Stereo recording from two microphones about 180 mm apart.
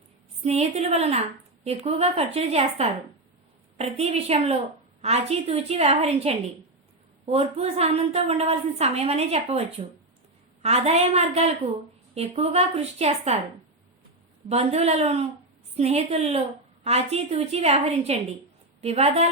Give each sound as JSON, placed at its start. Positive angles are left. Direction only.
{"t": 0.4, "sound": "a woman's voice", "side_deg": -35}
{"t": 14.5, "sound": "a woman's voice", "side_deg": -35}